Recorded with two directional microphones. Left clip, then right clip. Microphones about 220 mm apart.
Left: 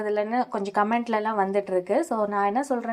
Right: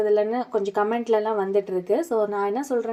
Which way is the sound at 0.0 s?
20° left (ahead or behind).